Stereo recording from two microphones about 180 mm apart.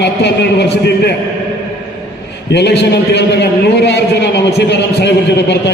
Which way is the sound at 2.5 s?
70° left (ahead or behind).